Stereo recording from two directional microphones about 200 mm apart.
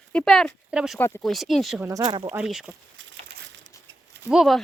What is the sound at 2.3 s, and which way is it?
Speech, 5° right (ahead or behind).